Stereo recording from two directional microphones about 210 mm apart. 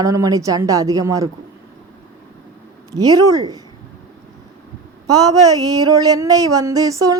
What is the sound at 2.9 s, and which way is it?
Music, 20° right (ahead or behind).